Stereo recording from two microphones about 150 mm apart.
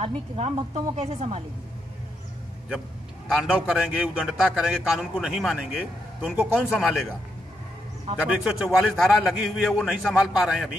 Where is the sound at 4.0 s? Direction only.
5° right (ahead or behind).